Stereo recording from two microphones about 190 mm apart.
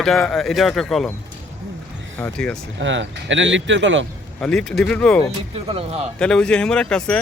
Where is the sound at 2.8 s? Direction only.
75° right (ahead or behind).